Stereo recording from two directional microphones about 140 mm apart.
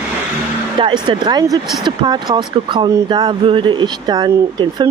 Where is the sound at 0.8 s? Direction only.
35° right (ahead or behind).